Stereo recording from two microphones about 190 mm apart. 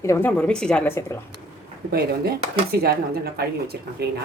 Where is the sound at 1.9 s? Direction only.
55° right (ahead or behind).